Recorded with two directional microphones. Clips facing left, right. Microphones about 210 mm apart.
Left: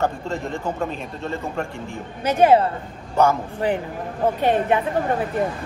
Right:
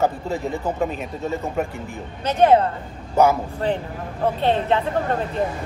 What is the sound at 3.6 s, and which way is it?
A woman's voice, 10° left (ahead or behind).